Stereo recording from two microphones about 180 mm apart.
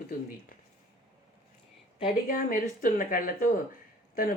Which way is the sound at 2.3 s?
50° left (ahead or behind).